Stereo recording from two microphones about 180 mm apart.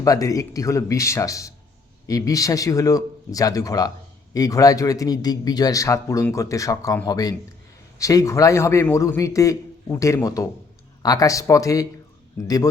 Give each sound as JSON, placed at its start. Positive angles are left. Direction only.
{"t": 0.0, "sound": "a man's voice", "side_deg": 20}